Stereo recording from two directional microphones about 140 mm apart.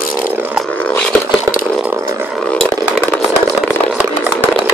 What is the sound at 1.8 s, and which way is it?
Chainsaw, 20° right (ahead or behind).